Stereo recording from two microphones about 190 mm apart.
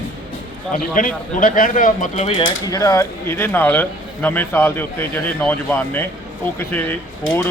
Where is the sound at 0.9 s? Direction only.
45° left (ahead or behind).